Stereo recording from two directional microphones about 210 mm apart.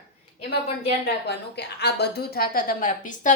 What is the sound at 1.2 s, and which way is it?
A woman's voice, 50° left (ahead or behind).